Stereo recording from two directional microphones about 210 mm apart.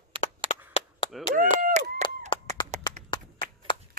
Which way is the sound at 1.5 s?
40° right (ahead or behind).